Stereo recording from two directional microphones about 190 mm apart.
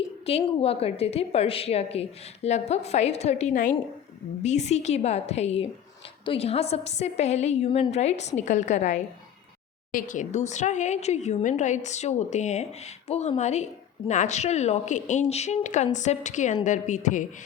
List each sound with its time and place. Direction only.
0.3 s a woman's voice: 30° left (ahead or behind)